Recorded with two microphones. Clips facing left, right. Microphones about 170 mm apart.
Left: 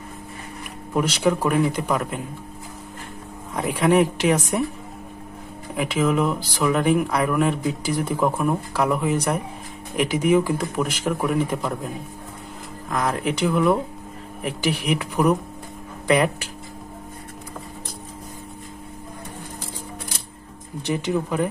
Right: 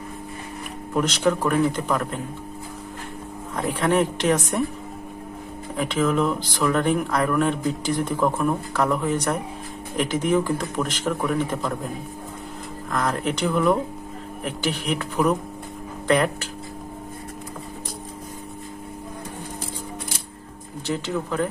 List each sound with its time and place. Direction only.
0.9 s speech: 10° left (ahead or behind)
3.5 s speech: 10° left (ahead or behind)
5.8 s speech: 10° left (ahead or behind)
12.9 s speech: 10° left (ahead or behind)
20.8 s speech: 15° left (ahead or behind)